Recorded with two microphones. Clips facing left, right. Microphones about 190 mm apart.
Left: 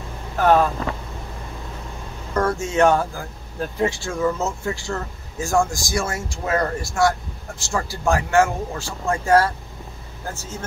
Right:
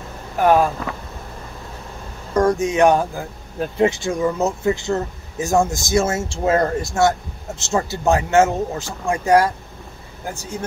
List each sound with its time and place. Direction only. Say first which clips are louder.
0.4 s speech: right 1 dB; 15° right (ahead or behind)
2.3 s speech: right 4 dB; 15° right (ahead or behind)